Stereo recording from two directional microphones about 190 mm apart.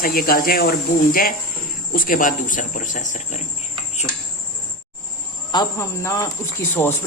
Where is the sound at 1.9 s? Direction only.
45° left (ahead or behind).